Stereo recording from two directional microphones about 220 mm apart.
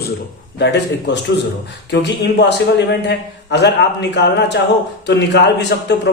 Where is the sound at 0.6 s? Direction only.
50° left (ahead or behind).